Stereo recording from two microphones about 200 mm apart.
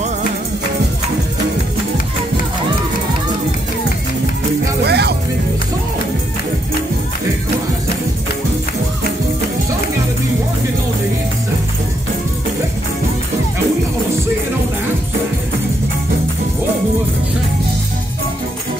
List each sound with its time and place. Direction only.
4.8 s music: 55° right (ahead or behind)